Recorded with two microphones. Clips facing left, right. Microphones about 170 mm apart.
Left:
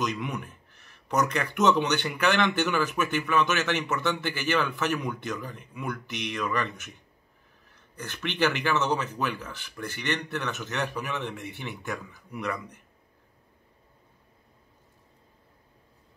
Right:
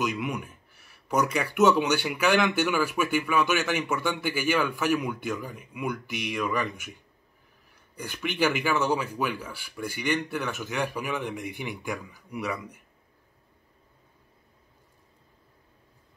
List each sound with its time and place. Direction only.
0.0 s speech: 10° right (ahead or behind)